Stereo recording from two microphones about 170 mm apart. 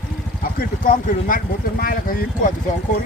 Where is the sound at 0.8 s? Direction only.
55° left (ahead or behind).